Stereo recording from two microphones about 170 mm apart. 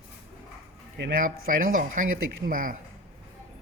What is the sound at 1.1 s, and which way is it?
Speech, 55° right (ahead or behind).